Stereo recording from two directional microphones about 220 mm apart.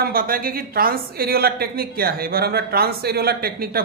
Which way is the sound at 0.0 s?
40° right (ahead or behind).